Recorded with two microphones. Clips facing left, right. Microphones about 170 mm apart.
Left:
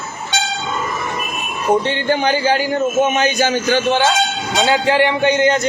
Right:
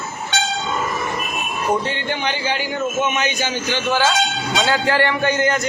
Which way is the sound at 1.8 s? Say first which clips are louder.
Left 6 dB; 35° left (ahead or behind).